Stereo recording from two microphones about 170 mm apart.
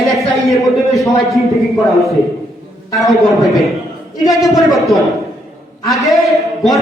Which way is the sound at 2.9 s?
Centre (ahead or behind).